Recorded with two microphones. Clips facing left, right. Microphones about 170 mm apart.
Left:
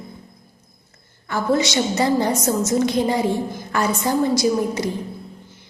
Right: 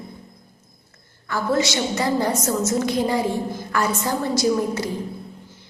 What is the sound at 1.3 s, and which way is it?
A woman's voice, 20° left (ahead or behind).